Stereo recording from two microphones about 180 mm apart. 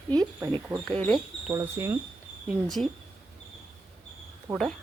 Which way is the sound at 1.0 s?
5° left (ahead or behind).